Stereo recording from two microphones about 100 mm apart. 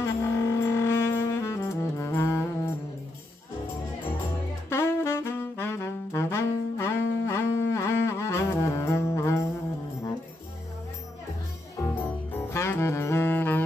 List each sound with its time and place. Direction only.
0.0 s music: 25° left (ahead or behind)
4.6 s saxophone: 25° left (ahead or behind)
11.8 s saxophone: 20° left (ahead or behind)